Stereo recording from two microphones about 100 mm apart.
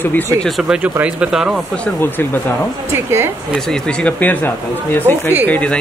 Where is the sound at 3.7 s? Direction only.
15° left (ahead or behind).